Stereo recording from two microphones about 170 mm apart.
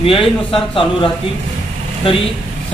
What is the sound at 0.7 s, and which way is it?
Speech, 30° left (ahead or behind).